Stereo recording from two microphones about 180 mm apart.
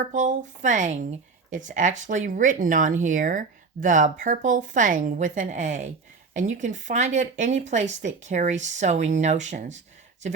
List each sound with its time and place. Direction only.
0.0 s speech: 45° right (ahead or behind)